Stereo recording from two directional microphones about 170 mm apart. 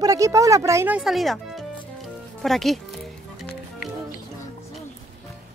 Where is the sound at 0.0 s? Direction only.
20° right (ahead or behind); by 2.8 s centre (ahead or behind).